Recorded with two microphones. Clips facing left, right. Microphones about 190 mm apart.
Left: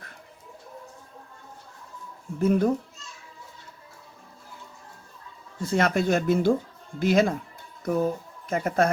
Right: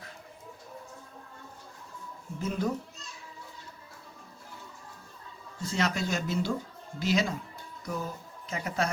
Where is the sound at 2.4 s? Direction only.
55° left (ahead or behind).